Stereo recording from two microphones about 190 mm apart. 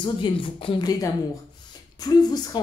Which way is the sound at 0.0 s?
25° left (ahead or behind).